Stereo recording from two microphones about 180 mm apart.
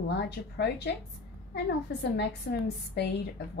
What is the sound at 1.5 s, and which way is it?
Speech, 65° left (ahead or behind).